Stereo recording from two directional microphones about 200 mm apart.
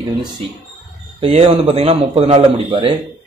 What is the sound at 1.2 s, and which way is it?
Speech, 30° right (ahead or behind).